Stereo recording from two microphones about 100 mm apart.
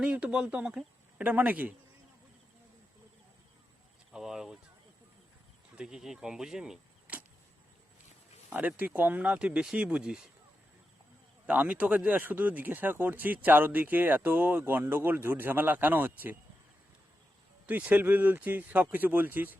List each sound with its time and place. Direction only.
0.0 s speech: 10° right (ahead or behind)
4.1 s speech: 5° right (ahead or behind)
5.7 s speech: 5° right (ahead or behind)
7.1 s arrow: 15° right (ahead or behind)
8.5 s speech: 15° right (ahead or behind)
11.4 s speech: 15° right (ahead or behind)
17.7 s speech: 15° right (ahead or behind)